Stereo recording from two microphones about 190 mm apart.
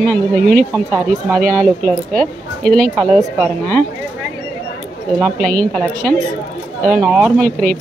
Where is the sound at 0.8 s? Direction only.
5° left (ahead or behind).